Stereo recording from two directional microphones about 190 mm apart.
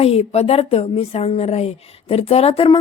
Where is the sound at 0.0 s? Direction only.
35° left (ahead or behind).